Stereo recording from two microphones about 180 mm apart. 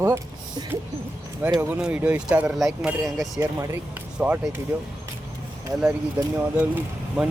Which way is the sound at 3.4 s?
15° right (ahead or behind).